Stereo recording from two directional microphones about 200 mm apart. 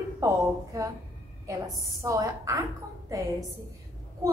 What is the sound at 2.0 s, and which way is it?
Speech, 15° right (ahead or behind).